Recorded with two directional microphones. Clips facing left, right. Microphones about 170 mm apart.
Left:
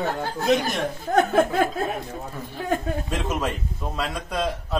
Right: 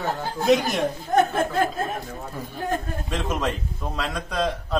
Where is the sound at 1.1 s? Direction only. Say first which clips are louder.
Even; 65° left (ahead or behind).